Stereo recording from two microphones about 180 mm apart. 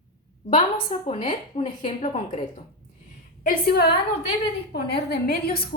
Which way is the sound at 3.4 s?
55° left (ahead or behind).